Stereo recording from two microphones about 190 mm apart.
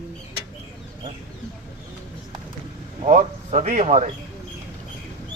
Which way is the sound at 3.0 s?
40° right (ahead or behind).